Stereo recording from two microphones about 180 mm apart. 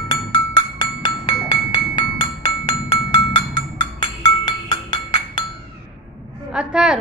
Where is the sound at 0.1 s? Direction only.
25° left (ahead or behind).